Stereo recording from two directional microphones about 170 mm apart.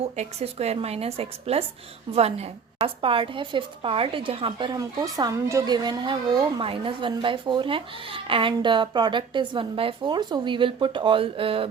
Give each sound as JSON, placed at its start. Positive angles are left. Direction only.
{"t": 0.0, "sound": "a woman's voice", "side_deg": -40}